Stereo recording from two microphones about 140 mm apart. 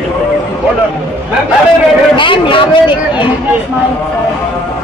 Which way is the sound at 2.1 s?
35° left (ahead or behind).